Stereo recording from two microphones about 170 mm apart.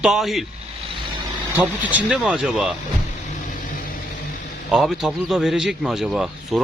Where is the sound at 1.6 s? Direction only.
10° right (ahead or behind).